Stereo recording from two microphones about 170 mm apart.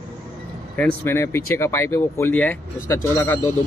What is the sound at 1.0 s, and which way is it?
Speech, 15° left (ahead or behind).